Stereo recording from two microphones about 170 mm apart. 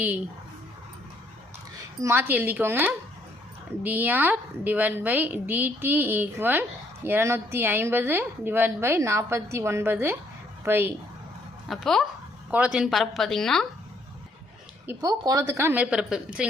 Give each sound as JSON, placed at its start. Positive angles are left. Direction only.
{"t": 2.0, "sound": "a woman's voice", "side_deg": -15}
{"t": 11.7, "sound": "a woman's voice", "side_deg": 0}
{"t": 14.8, "sound": "a woman's voice", "side_deg": -20}